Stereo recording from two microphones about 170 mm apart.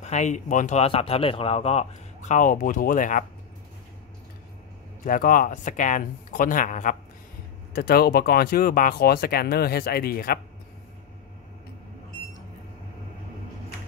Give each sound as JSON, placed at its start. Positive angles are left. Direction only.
{"t": 0.0, "sound": "speech", "side_deg": 45}
{"t": 5.0, "sound": "speech", "side_deg": 55}
{"t": 7.7, "sound": "speech", "side_deg": 65}